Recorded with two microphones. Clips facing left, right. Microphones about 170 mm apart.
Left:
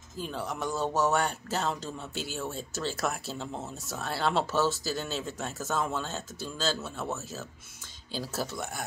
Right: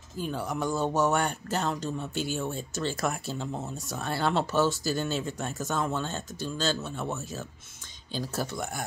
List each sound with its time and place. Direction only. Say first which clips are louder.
0.2 s speech: right 3 dB; centre (ahead or behind)